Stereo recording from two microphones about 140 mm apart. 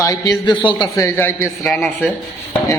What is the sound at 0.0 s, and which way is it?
Speech, 25° left (ahead or behind).